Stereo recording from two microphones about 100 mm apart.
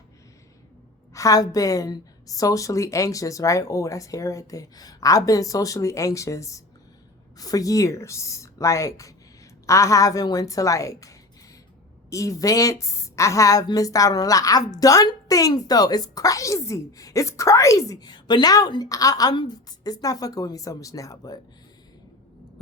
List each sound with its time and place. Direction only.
1.1 s a woman's voice: 35° left (ahead or behind)
12.1 s a woman's voice: 35° left (ahead or behind)